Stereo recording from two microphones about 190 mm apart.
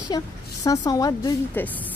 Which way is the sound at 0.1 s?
20° left (ahead or behind).